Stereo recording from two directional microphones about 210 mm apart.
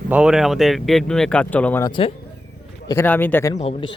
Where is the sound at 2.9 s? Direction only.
10° left (ahead or behind).